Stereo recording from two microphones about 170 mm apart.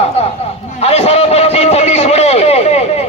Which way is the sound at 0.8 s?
40° left (ahead or behind).